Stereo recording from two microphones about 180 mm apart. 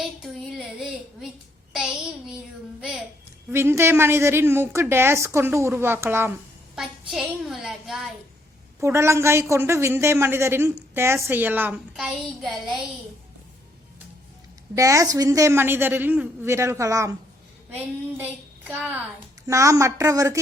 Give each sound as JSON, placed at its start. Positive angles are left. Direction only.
{"t": 0.0, "sound": "a sound", "side_deg": 0}
{"t": 1.7, "sound": "child singing", "side_deg": -5}
{"t": 3.5, "sound": "a woman's voice", "side_deg": -15}
{"t": 8.8, "sound": "a woman's voice", "side_deg": -15}
{"t": 14.8, "sound": "a woman's voice", "side_deg": -20}